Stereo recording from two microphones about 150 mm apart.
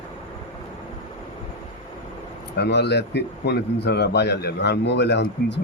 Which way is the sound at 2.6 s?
90° left.